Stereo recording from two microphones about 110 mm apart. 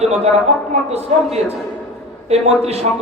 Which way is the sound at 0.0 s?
75° right (ahead or behind).